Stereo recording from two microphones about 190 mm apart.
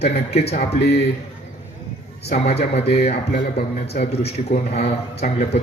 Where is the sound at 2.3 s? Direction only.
35° left (ahead or behind).